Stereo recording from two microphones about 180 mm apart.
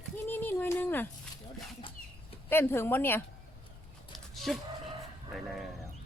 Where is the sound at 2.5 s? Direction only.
10° left (ahead or behind).